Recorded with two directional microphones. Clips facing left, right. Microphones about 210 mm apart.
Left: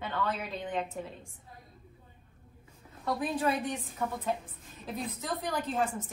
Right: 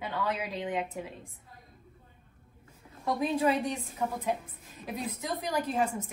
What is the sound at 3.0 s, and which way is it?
Speech, 15° right (ahead or behind).